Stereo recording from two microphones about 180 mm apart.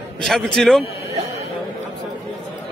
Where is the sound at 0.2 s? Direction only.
Centre (ahead or behind).